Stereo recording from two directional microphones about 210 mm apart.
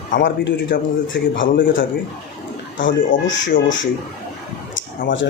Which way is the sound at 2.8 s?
60° left (ahead or behind).